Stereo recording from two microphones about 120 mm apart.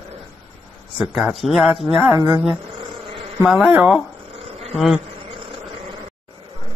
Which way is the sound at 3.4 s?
5° right (ahead or behind).